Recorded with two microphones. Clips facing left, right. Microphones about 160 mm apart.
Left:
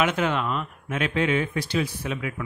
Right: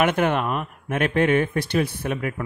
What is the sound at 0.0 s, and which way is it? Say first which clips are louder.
Speech: right 3 dB; 55° right (ahead or behind).